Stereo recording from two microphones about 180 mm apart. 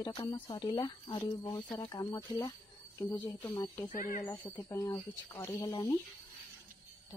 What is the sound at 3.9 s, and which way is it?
Speech, 50° left (ahead or behind).